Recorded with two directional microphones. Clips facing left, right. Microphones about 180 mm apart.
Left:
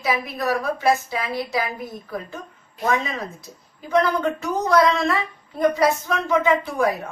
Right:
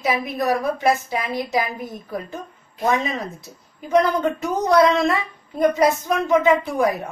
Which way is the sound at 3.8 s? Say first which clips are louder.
Right 2 dB; 20° right (ahead or behind).